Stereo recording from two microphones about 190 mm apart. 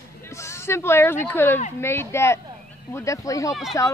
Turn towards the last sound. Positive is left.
turn(degrees=0)  # may be behind; listen again after turning